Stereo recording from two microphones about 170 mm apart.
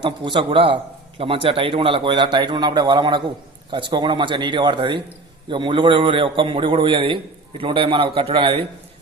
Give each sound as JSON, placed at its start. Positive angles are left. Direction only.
{"t": 0.0, "sound": "a man's voice", "side_deg": -30}